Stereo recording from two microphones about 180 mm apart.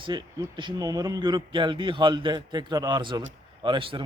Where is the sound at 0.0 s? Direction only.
25° right (ahead or behind).